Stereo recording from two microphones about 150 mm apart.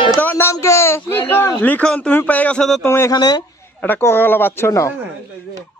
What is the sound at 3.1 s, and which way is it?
Speech, 30° left (ahead or behind).